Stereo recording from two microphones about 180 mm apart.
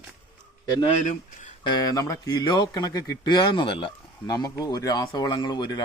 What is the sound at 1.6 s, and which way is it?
Speech, 20° left (ahead or behind).